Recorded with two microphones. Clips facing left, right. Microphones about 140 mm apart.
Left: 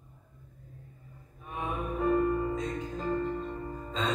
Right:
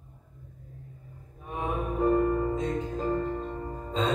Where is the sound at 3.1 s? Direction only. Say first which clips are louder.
Even; 45° right (ahead or behind).